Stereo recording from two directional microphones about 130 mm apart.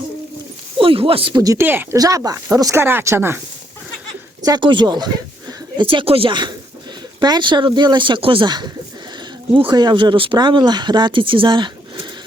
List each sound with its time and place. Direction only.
0.8 s speech: 45° right (ahead or behind)
1.4 s speech: 25° right (ahead or behind)
1.6 s speech: 15° right (ahead or behind)
2.0 s speech: 25° right (ahead or behind)
4.4 s speech: 35° right (ahead or behind)